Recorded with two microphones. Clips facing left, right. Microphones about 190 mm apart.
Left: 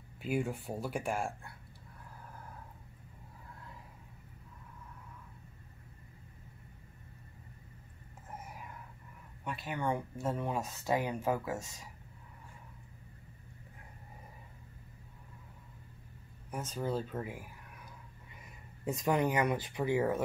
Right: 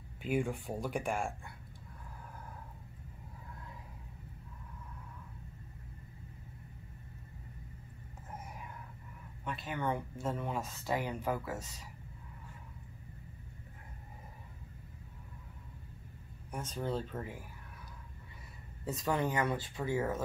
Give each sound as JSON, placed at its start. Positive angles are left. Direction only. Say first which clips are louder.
{"t": 0.2, "sound": "speech", "louder": "right 1 dB", "side_deg": 5}
{"t": 9.4, "sound": "speech", "louder": "left 1 dB", "side_deg": 10}
{"t": 16.4, "sound": "speech", "louder": "left 1 dB", "side_deg": 10}
{"t": 18.9, "sound": "speech", "louder": "left 3 dB", "side_deg": 15}